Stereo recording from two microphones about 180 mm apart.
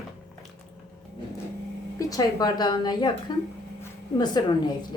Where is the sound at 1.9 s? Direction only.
20° left (ahead or behind).